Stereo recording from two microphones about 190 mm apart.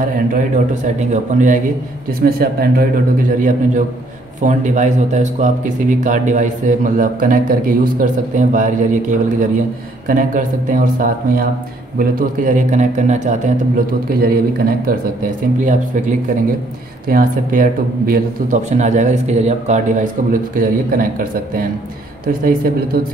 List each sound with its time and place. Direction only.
0.3 s a man's voice: 40° right (ahead or behind)
2.2 s a man's voice: 50° right (ahead or behind)
10.0 s a man's voice: 45° right (ahead or behind)
17.1 s speech: 45° right (ahead or behind)
18.7 s a man's voice: 40° right (ahead or behind)